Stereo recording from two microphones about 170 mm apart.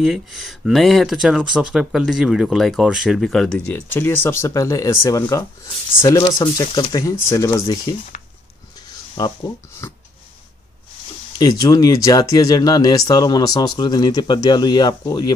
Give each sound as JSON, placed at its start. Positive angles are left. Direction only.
{"t": 0.0, "sound": "speech", "side_deg": 0}
{"t": 9.1, "sound": "speech", "side_deg": 20}
{"t": 11.3, "sound": "speech", "side_deg": 20}